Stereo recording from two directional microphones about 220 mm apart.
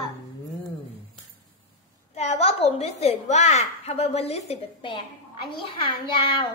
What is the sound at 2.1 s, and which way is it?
A child's voice, 30° left (ahead or behind).